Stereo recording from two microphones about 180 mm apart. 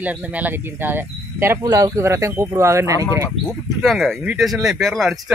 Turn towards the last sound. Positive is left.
turn(degrees=0)  # may be behind; listen again after turning